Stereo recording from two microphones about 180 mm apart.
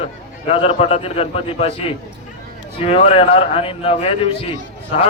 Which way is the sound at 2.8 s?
35° left (ahead or behind).